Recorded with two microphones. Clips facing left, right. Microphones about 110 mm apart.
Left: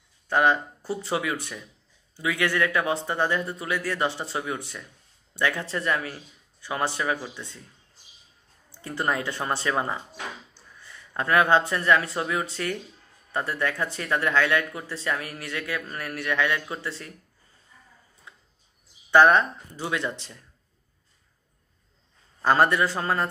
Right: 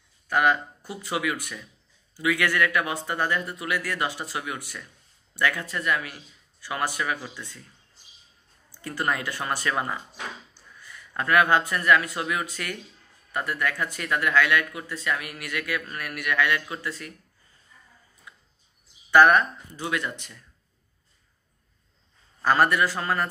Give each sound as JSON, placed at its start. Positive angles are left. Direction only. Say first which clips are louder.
{"t": 0.3, "sound": "speech", "louder": "left 1 dB", "side_deg": 25}
{"t": 8.7, "sound": "speech", "louder": "left 1 dB", "side_deg": 25}
{"t": 19.0, "sound": "speech", "louder": "even", "side_deg": 20}
{"t": 22.4, "sound": "speech", "louder": "left 1 dB", "side_deg": 25}